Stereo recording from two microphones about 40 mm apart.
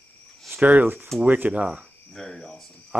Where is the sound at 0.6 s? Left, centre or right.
Right.